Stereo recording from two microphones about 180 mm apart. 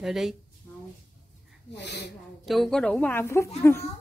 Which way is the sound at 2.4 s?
Centre (ahead or behind).